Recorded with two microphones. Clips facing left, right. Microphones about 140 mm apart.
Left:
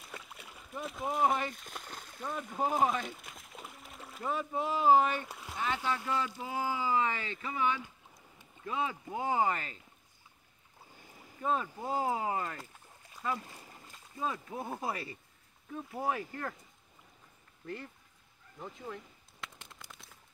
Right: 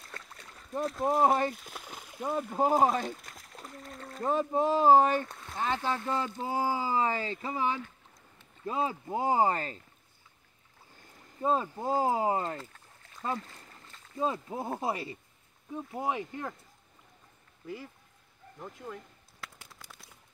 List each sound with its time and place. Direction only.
0.0 s rowboat: 5° left (ahead or behind)
1.0 s speech: 40° right (ahead or behind)
1.5 s splash: 5° right (ahead or behind)
2.5 s speech: 40° right (ahead or behind)
3.2 s splash: centre (ahead or behind)
4.2 s speech: 35° right (ahead or behind)
5.2 s a sound: 10° left (ahead or behind)
5.6 s speech: 35° right (ahead or behind)
11.0 s a sound: 5° left (ahead or behind)
11.4 s speech: 30° right (ahead or behind)
12.5 s boat: 15° left (ahead or behind)
13.4 s a sound: 15° left (ahead or behind)
14.1 s speech: 25° right (ahead or behind)
18.6 s a sound: centre (ahead or behind)